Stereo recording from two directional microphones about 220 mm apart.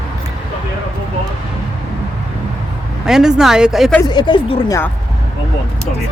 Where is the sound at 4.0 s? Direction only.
20° left (ahead or behind).